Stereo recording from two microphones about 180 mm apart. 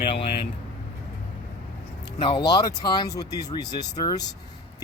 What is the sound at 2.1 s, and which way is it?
Speech, 25° left (ahead or behind).